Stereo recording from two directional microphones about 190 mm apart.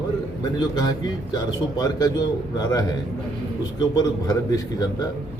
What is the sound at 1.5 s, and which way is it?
A man's voice, 20° left (ahead or behind).